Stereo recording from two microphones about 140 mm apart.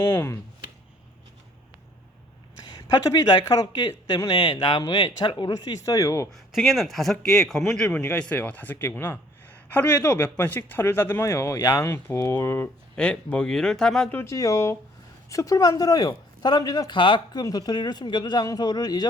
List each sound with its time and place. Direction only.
0.0 s a man's voice: 20° left (ahead or behind)
2.7 s speech: 30° left (ahead or behind)
6.3 s a man's voice: centre (ahead or behind)
14.2 s speech: 25° left (ahead or behind)